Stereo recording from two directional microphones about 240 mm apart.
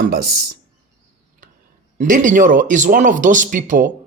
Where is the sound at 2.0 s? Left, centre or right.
Right.